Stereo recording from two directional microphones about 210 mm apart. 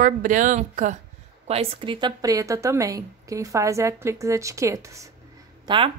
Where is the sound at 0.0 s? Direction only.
40° right (ahead or behind); by 5.0 s 15° right (ahead or behind).